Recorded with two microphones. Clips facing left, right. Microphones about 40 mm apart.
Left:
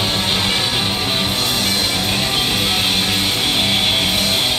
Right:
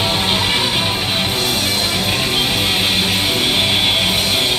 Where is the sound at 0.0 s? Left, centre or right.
Centre.